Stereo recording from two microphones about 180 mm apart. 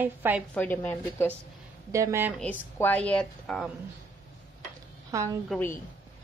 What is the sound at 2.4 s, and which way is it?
A woman's voice, 10° left (ahead or behind).